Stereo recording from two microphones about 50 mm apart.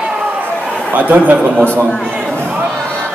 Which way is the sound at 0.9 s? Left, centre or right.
Right.